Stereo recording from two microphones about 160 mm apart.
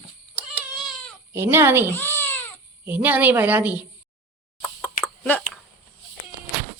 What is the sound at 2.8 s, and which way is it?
A woman's voice, 10° right (ahead or behind).